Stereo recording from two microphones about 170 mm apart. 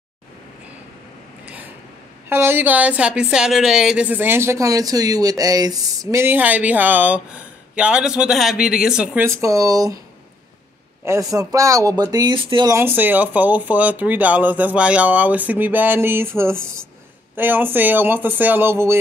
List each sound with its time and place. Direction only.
2.2 s a woman's voice: 15° right (ahead or behind)
11.1 s speech: 20° right (ahead or behind)
12.7 s a woman's voice: 10° right (ahead or behind)